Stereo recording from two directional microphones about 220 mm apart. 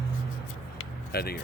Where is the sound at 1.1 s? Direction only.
45° left (ahead or behind).